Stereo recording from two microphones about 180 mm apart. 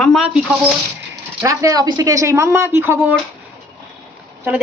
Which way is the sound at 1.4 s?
20° right (ahead or behind).